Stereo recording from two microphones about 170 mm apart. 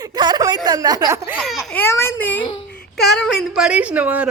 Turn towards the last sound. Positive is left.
turn(degrees=-10)  # may be behind; listen again after turning